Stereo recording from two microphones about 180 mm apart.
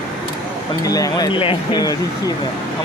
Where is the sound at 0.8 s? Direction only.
20° left (ahead or behind).